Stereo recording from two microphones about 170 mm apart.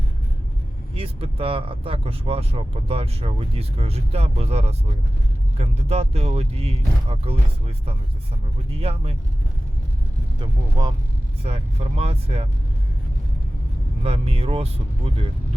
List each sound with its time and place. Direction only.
0.9 s speech: 35° right (ahead or behind)
8.7 s speech: 35° right (ahead or behind)
10.4 s speech: 25° right (ahead or behind)
11.4 s speech: 35° right (ahead or behind)
14.0 s speech: 35° right (ahead or behind)